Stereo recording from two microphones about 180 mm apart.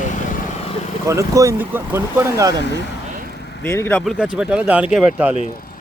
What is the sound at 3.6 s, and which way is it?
Speech, 10° left (ahead or behind).